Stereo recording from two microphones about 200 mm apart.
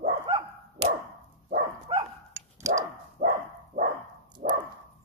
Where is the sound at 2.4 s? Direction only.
15° right (ahead or behind).